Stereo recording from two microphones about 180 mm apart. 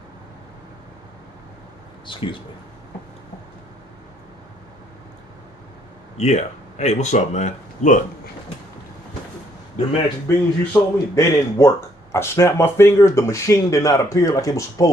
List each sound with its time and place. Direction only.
2.0 s speech: 25° left (ahead or behind)
6.1 s speech: 40° left (ahead or behind)
10.2 s speech: 15° left (ahead or behind)